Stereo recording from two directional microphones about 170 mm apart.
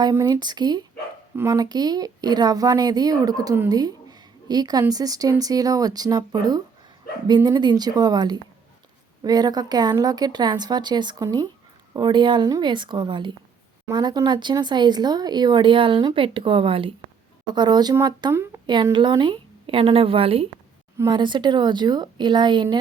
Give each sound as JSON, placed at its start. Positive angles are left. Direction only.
{"t": 0.0, "sound": "speech", "side_deg": -20}